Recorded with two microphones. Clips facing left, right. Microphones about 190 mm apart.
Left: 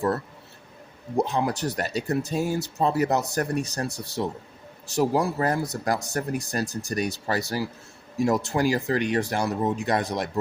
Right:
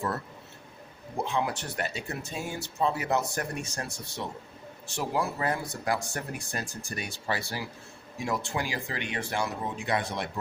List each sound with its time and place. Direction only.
1.2 s speech: 40° left (ahead or behind)